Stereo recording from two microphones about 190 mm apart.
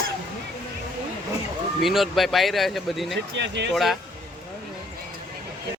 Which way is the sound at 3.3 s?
65° right (ahead or behind).